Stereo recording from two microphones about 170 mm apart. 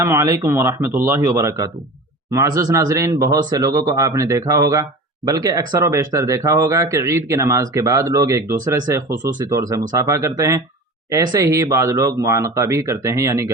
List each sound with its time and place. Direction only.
0.0 s speech: 15° right (ahead or behind)